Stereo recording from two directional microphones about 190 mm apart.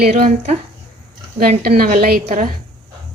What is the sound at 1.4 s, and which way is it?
Speech, 55° right (ahead or behind).